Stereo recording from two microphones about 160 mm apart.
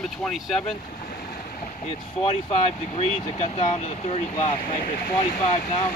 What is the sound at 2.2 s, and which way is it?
Speech, 35° left (ahead or behind).